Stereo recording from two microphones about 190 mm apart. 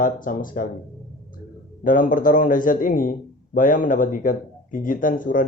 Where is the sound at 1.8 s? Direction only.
45° left (ahead or behind).